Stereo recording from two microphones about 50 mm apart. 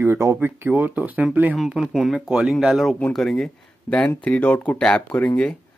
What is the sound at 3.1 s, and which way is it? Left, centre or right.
Speech, centre.